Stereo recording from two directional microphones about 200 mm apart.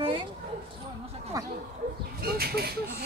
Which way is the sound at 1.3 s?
15° right (ahead or behind).